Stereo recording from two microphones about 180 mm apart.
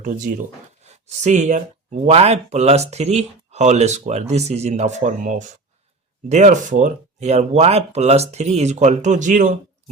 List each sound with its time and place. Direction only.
0.9 s speech: 40° right (ahead or behind)